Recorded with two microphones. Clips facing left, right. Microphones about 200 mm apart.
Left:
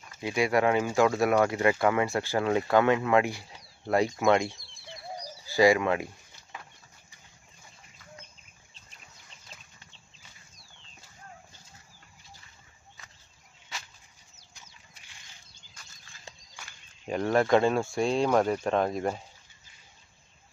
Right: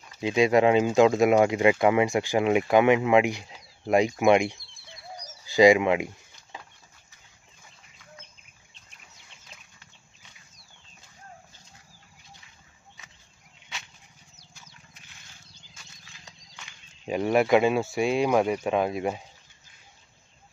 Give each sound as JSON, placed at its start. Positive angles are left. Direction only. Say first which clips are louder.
{"t": 0.2, "sound": "speech", "louder": "right 5 dB", "side_deg": -20}
{"t": 17.0, "sound": "speech", "louder": "right 2 dB", "side_deg": -15}